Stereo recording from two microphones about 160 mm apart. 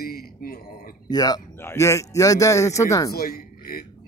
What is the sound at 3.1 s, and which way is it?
Speech, 70° left (ahead or behind).